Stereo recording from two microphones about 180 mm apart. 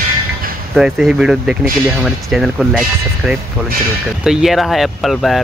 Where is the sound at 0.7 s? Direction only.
Centre (ahead or behind).